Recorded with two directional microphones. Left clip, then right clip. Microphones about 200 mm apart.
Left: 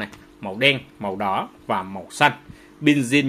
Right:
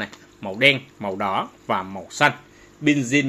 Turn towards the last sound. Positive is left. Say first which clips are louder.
# left 1 dB
turn(degrees=15)  # may be behind; listen again after turning